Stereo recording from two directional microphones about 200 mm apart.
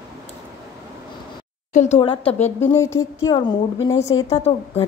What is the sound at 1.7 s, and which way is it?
Speech, 35° left (ahead or behind).